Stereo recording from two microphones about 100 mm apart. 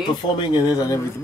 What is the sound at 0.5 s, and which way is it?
Speech, 40° left (ahead or behind).